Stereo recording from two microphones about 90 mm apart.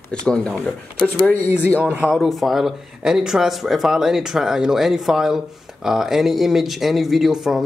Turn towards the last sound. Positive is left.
turn(degrees=-5)  # may be behind; listen again after turning